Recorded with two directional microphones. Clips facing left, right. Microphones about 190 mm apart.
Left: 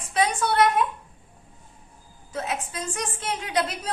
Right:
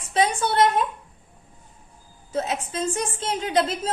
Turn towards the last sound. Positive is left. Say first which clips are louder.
# right 4 dB
turn(degrees=-25)  # may be behind; listen again after turning